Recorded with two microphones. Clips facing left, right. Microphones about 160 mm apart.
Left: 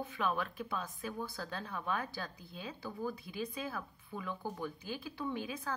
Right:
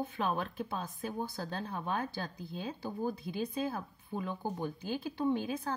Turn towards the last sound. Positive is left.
turn(degrees=-30)  # may be behind; listen again after turning